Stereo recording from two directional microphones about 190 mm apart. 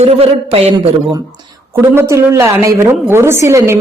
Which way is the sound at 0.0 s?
30° right (ahead or behind).